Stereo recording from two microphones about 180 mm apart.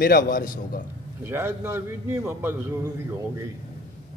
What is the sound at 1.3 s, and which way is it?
A man's voice, 15° right (ahead or behind).